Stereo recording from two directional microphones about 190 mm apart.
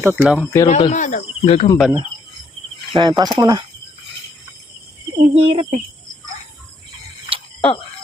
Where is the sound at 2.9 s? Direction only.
20° right (ahead or behind).